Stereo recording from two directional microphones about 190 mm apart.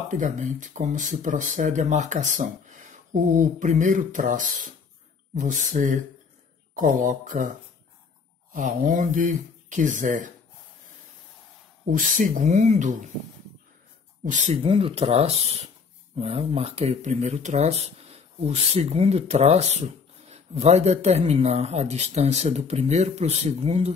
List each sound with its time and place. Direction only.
0.1 s speech: 40° right (ahead or behind)
8.5 s speech: 45° right (ahead or behind)
11.8 s speech: 45° right (ahead or behind)
14.2 s speech: 40° right (ahead or behind)